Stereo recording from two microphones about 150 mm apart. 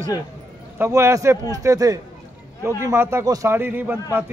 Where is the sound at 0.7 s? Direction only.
20° right (ahead or behind).